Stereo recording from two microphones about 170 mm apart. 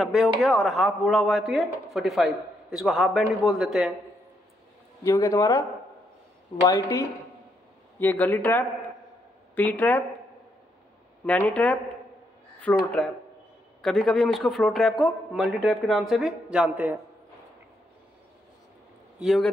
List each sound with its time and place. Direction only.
0.0 s speech: centre (ahead or behind)
5.0 s speech: 20° left (ahead or behind)
11.2 s speech: 10° left (ahead or behind); by 17.0 s 10° right (ahead or behind)
19.1 s speech: centre (ahead or behind)